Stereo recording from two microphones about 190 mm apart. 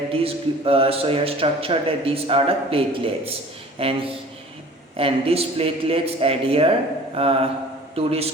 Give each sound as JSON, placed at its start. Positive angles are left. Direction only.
{"t": 0.1, "sound": "speech", "side_deg": -30}
{"t": 4.9, "sound": "a man's voice", "side_deg": -30}